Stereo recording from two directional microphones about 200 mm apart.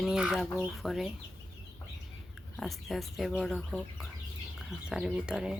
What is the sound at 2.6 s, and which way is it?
Speech, centre (ahead or behind).